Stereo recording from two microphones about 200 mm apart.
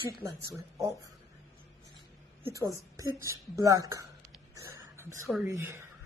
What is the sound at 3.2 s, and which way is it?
Speech, 15° right (ahead or behind).